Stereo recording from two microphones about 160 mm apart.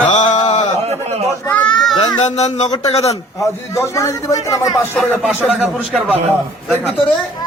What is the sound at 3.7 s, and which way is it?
Speech, 20° left (ahead or behind).